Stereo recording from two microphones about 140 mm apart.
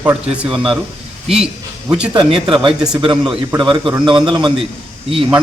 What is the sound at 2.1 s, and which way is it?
Speech, 35° right (ahead or behind).